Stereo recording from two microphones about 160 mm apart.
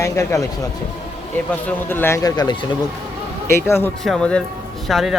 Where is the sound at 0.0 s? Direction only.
20° left (ahead or behind).